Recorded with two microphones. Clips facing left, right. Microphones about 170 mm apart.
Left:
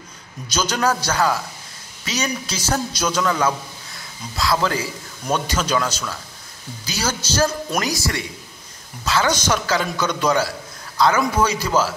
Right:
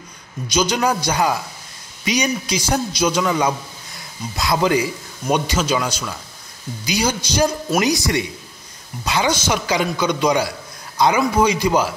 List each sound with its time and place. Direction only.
0.5 s a man's voice: 10° right (ahead or behind)